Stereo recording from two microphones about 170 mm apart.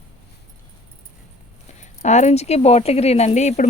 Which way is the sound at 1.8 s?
45° left (ahead or behind).